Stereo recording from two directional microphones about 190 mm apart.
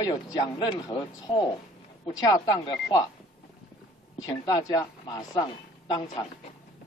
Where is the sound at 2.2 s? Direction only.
20° left (ahead or behind).